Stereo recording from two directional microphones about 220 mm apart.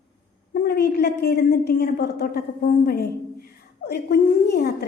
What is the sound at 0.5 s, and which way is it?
A woman's voice, 45° left (ahead or behind).